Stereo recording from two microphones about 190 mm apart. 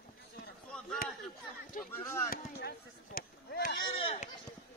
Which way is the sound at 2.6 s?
55° left (ahead or behind).